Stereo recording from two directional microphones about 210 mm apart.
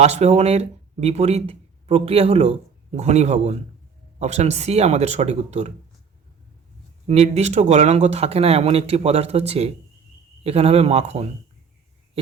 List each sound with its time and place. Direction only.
0.0 s speech: 30° right (ahead or behind)
7.1 s speech: 30° right (ahead or behind)